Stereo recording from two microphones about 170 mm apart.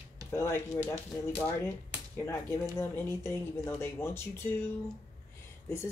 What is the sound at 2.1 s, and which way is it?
Speech, 15° left (ahead or behind).